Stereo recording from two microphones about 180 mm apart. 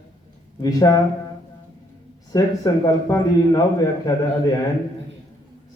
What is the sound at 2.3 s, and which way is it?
A man's voice, 20° left (ahead or behind).